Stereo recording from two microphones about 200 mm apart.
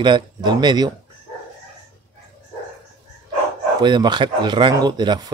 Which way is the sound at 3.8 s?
20° right (ahead or behind).